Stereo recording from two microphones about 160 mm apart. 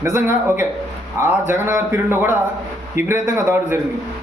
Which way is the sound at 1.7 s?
15° right (ahead or behind).